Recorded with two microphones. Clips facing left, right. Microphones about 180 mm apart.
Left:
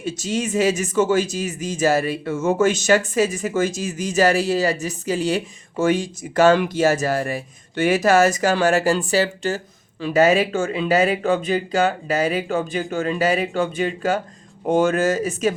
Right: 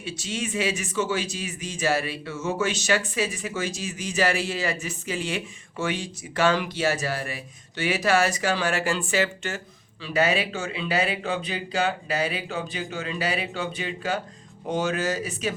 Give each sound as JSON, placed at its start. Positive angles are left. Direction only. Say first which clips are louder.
{"t": 0.0, "sound": "speech", "louder": "left 7 dB", "side_deg": 45}